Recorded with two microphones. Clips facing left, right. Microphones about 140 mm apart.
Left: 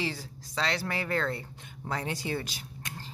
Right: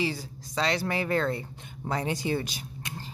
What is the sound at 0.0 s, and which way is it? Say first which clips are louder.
Speech: right 4 dB; 15° right (ahead or behind).